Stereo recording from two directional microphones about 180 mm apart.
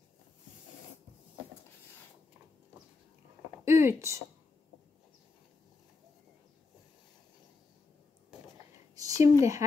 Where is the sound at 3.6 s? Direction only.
15° right (ahead or behind).